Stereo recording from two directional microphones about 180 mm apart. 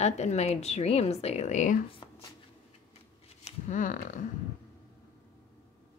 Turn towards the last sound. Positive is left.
turn(degrees=45)  # may be behind; listen again after turning